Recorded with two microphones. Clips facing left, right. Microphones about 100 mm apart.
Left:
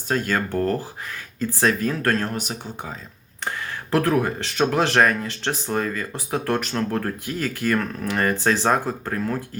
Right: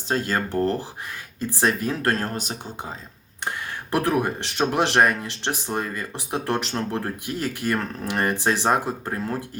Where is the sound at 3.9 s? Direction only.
15° right (ahead or behind).